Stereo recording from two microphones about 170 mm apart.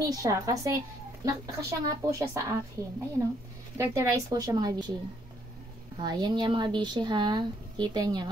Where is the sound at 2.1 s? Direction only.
20° right (ahead or behind).